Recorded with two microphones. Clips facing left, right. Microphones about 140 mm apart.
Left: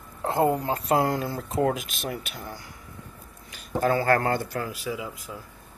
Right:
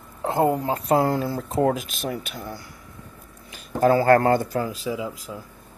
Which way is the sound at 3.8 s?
35° right (ahead or behind).